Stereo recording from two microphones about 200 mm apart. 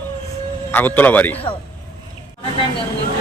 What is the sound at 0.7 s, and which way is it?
Speech, 10° left (ahead or behind).